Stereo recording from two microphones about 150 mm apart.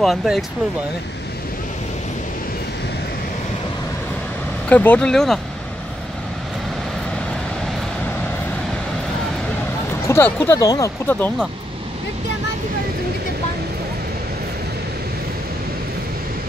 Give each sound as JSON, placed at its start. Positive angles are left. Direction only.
{"t": 0.0, "sound": "speech", "side_deg": 0}
{"t": 4.6, "sound": "speech", "side_deg": 10}
{"t": 10.0, "sound": "speech", "side_deg": 15}
{"t": 11.1, "sound": "speech", "side_deg": 15}